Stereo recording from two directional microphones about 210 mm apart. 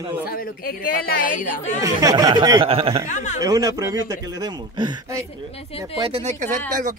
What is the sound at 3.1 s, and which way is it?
Speech, 35° left (ahead or behind).